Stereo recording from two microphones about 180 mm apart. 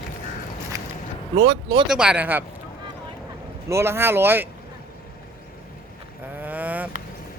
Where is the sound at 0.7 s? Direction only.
20° right (ahead or behind).